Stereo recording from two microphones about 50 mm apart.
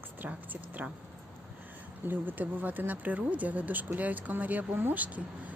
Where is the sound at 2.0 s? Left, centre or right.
Right.